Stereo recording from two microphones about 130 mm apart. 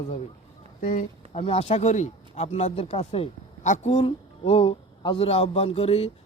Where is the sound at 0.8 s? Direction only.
80° left.